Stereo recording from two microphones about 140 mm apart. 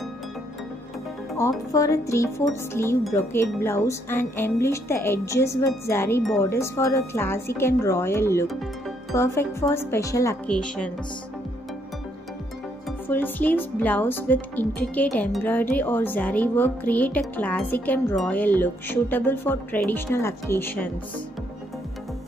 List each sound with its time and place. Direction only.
1.7 s speech: 25° left (ahead or behind)
10.4 s speech: 5° left (ahead or behind)
13.1 s speech: 15° left (ahead or behind)